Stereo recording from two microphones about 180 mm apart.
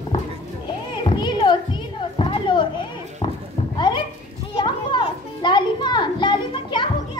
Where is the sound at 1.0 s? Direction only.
25° left (ahead or behind).